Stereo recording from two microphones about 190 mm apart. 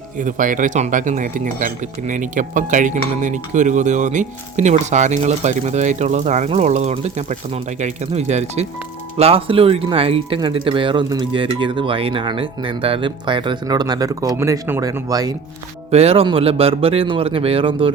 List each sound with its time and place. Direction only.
0.2 s speech: 45° right (ahead or behind); by 15.4 s 20° right (ahead or behind)
15.9 s speech: 35° right (ahead or behind)